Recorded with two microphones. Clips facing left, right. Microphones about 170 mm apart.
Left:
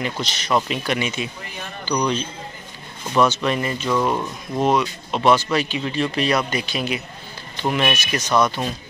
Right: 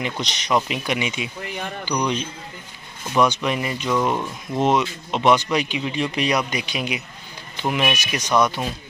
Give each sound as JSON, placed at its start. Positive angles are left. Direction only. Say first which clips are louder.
{"t": 0.0, "sound": "speech", "louder": "left 1 dB", "side_deg": -15}